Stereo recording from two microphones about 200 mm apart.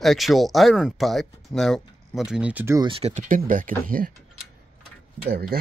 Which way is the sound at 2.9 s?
35° right (ahead or behind).